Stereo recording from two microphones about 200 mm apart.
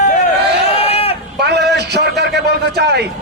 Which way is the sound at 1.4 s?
55° right (ahead or behind).